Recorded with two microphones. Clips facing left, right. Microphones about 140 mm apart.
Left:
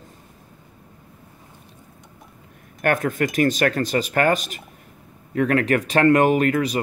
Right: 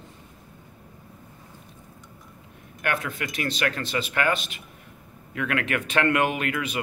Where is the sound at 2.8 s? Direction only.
45° left (ahead or behind).